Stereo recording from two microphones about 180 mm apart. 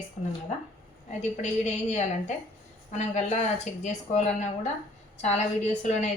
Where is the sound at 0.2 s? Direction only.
45° left (ahead or behind).